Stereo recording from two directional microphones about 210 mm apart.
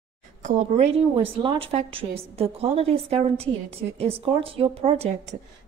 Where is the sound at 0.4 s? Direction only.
35° right (ahead or behind).